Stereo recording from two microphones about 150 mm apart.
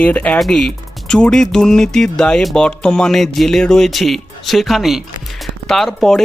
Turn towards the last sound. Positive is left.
turn(degrees=0)  # may be behind; listen again after turning